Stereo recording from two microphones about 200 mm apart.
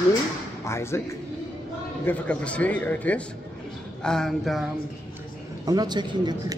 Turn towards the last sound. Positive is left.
turn(degrees=-20)  # may be behind; listen again after turning